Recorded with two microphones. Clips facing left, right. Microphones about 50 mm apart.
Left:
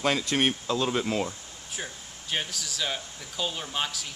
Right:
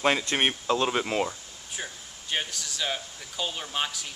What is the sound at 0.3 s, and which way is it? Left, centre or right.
Speech, right.